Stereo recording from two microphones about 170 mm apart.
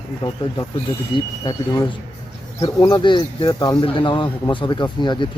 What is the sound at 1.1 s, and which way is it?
Speech, 25° left (ahead or behind).